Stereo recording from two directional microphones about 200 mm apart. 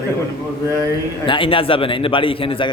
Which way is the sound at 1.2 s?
25° left (ahead or behind).